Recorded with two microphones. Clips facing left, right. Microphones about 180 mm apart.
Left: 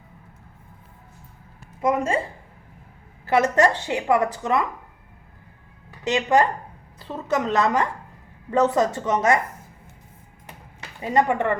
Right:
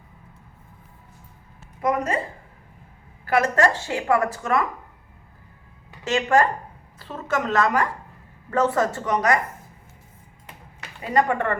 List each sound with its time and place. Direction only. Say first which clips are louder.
1.8 s a woman's voice: left 1 dB; 25° left (ahead or behind)
3.2 s a woman's voice: left 1 dB; 20° left (ahead or behind)
6.1 s a woman's voice: even; 20° left (ahead or behind)
11.0 s a woman's voice: left 1 dB; 20° left (ahead or behind)